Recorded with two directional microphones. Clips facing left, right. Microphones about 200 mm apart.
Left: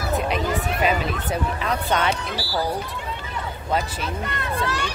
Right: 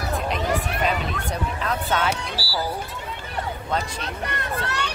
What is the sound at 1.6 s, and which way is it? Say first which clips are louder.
Speech: right 1 dB; centre (ahead or behind).